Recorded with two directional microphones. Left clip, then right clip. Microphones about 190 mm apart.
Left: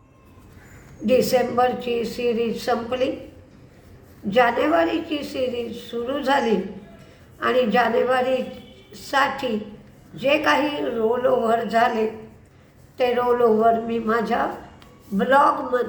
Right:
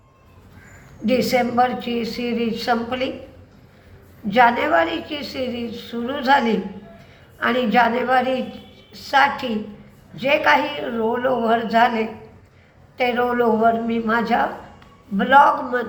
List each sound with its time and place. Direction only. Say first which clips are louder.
1.0 s a woman's voice: even; 15° left (ahead or behind)
4.3 s a woman's voice: right 3 dB; 15° left (ahead or behind)